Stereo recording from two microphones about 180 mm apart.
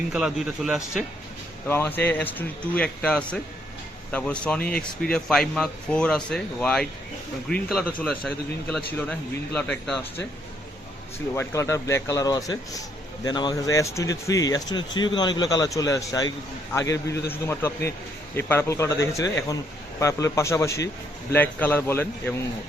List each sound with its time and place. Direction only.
0.1 s speech: 5° right (ahead or behind)
1.6 s a man's voice: 10° left (ahead or behind)
11.3 s a man's voice: 15° left (ahead or behind)